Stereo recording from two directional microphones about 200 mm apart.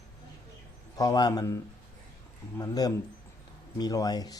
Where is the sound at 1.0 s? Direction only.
20° left (ahead or behind).